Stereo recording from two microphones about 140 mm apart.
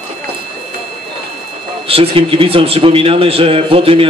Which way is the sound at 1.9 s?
45° right (ahead or behind).